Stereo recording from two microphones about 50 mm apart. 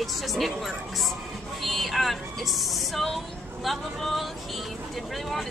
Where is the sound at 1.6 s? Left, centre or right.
Centre.